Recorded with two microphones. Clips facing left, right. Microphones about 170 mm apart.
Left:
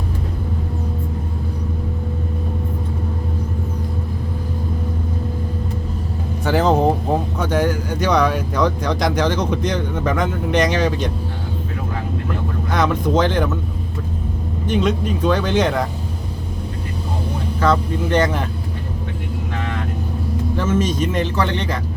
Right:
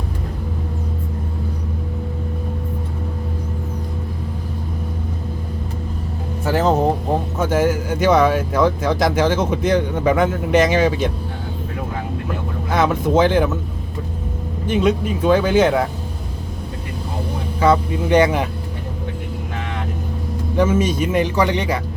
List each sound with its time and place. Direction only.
6.4 s vehicle: centre (ahead or behind)
7.3 s speech: 5° right (ahead or behind)
12.7 s speech: 5° right (ahead or behind)
14.7 s speech: 5° right (ahead or behind)
17.6 s speech: 10° right (ahead or behind)
20.6 s speech: 10° right (ahead or behind)